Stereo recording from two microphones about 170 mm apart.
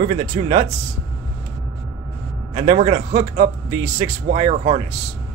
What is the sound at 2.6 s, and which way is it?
Speech, 35° right (ahead or behind).